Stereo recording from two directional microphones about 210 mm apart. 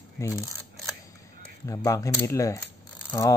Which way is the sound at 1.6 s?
15° left (ahead or behind).